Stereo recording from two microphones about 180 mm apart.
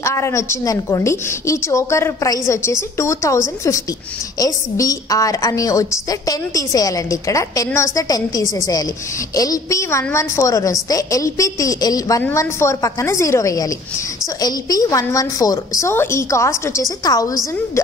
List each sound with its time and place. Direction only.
0.0 s a woman's voice: 15° left (ahead or behind)